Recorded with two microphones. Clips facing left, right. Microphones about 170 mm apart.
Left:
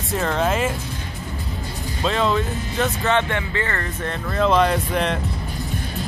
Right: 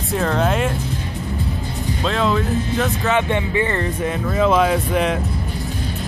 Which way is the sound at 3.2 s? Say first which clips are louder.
Right 4 dB; 15° right (ahead or behind).